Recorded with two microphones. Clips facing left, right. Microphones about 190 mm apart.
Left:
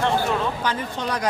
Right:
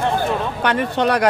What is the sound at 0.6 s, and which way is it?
Speech, 65° right (ahead or behind).